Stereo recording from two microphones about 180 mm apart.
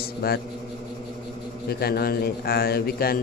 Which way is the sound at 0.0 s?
60° left (ahead or behind).